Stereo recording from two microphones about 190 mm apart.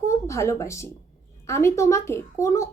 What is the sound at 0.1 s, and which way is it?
A woman's voice, 15° left (ahead or behind).